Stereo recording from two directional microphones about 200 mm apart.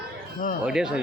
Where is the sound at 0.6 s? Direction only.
5° right (ahead or behind).